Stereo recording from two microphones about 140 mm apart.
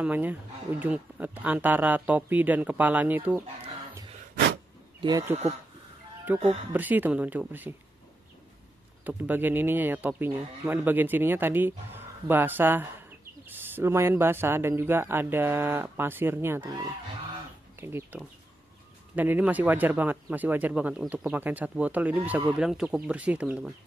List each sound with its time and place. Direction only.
0.0 s speech: 10° right (ahead or behind)
6.3 s speech: 10° right (ahead or behind)
9.0 s speech: 15° right (ahead or behind)
16.6 s speech: 30° right (ahead or behind)
17.7 s speech: 15° right (ahead or behind)